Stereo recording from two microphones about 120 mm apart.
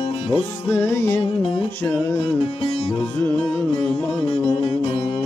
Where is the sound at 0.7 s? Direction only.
20° left (ahead or behind).